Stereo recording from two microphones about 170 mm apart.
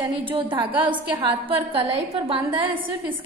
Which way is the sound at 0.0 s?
30° right (ahead or behind).